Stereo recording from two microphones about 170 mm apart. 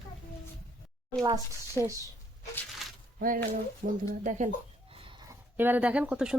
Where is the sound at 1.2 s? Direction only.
20° right (ahead or behind).